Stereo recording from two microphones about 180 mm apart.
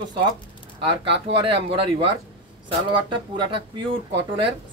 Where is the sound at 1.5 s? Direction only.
30° right (ahead or behind).